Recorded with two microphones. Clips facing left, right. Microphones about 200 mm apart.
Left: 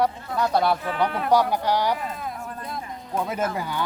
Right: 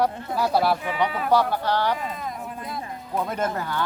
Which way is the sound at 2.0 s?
Centre (ahead or behind).